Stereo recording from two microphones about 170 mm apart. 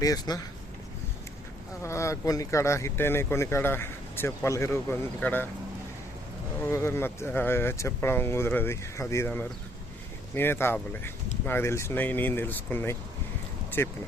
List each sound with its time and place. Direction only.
0.0 s speech: 20° left (ahead or behind)
1.8 s speech: 15° left (ahead or behind)
6.6 s speech: 15° left (ahead or behind)
13.7 s a sound: 10° left (ahead or behind)